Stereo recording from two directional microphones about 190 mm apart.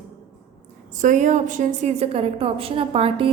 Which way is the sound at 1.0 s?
40° right (ahead or behind).